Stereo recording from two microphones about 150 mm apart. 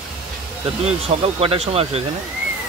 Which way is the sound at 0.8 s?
40° right (ahead or behind).